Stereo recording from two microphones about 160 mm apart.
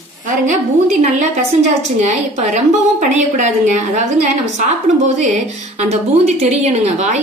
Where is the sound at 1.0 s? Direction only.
45° right (ahead or behind).